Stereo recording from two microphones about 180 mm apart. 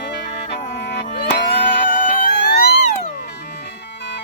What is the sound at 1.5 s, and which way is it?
Music, 70° left (ahead or behind).